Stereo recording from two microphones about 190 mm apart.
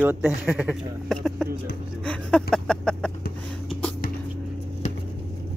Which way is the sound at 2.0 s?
5° left (ahead or behind).